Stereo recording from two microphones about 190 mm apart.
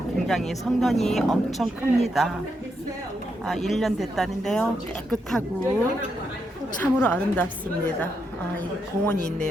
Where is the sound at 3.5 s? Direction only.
Centre (ahead or behind).